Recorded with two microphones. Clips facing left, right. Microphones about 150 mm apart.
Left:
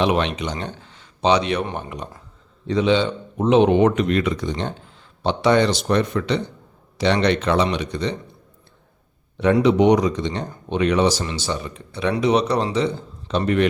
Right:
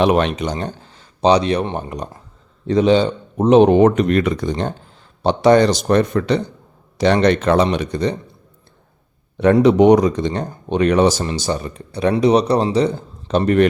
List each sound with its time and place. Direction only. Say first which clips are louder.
0.0 s speech: right 4 dB; 45° right (ahead or behind)
9.4 s a man's voice: right 4 dB; 45° right (ahead or behind)